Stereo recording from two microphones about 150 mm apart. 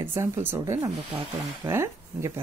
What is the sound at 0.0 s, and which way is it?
A woman's voice, 15° right (ahead or behind).